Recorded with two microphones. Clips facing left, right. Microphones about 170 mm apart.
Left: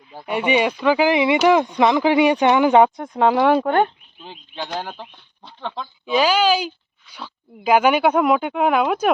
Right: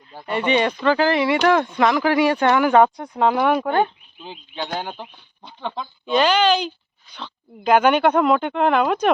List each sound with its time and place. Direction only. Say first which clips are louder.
0.1 s speech: left 1 dB; 10° left (ahead or behind); by 3.7 s 25° left (ahead or behind)
4.2 s speech: right 1 dB; centre (ahead or behind)